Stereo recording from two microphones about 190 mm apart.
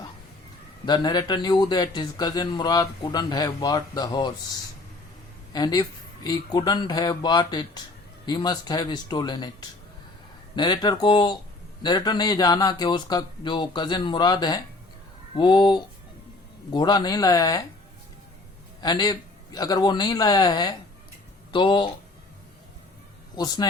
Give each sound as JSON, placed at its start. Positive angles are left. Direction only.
{"t": 0.9, "sound": "a man's voice", "side_deg": 20}
{"t": 5.5, "sound": "a man's voice", "side_deg": 20}
{"t": 10.5, "sound": "a man's voice", "side_deg": 25}
{"t": 18.8, "sound": "a man's voice", "side_deg": 20}
{"t": 23.3, "sound": "a man's voice", "side_deg": 20}